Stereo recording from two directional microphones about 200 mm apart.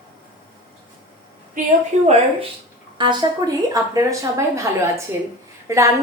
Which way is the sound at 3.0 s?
20° right (ahead or behind).